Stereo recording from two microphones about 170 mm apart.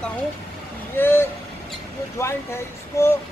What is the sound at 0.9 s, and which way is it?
Speech, 10° left (ahead or behind).